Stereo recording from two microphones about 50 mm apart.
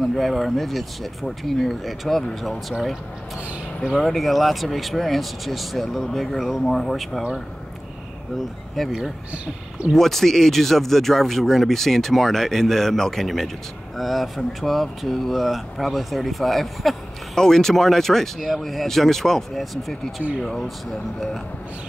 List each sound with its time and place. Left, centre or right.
0.1 s speech: centre
3.9 s speech: centre
8.4 s speech: centre
9.3 s speech: right
9.9 s speech: centre